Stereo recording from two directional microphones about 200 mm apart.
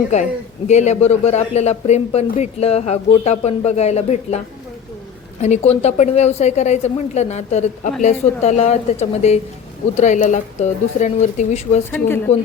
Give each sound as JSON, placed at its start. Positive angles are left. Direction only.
{"t": 0.7, "sound": "speech", "side_deg": 35}
{"t": 5.4, "sound": "speech", "side_deg": 35}
{"t": 11.9, "sound": "speech", "side_deg": 10}